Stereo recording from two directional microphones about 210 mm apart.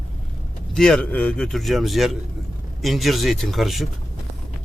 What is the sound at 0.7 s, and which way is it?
A man's voice, 5° left (ahead or behind).